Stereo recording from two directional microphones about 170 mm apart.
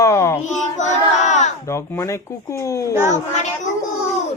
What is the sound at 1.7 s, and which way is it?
Speech, 15° left (ahead or behind).